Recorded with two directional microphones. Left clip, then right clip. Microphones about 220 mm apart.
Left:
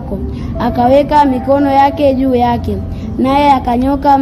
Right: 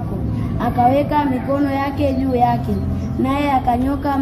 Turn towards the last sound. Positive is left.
turn(degrees=45)  # may be behind; listen again after turning